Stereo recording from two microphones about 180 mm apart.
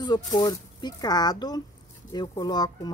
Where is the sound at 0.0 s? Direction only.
25° left (ahead or behind).